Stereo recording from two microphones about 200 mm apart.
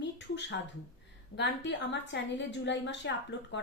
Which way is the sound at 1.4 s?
60° left (ahead or behind).